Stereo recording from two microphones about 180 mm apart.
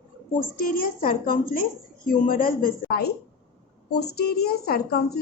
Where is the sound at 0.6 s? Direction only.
50° left (ahead or behind).